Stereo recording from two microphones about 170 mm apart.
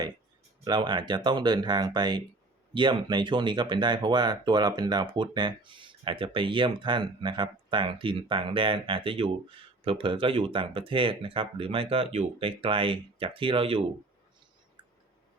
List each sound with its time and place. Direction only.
0.6 s speech: 25° right (ahead or behind)
14.8 s clicking: 25° right (ahead or behind)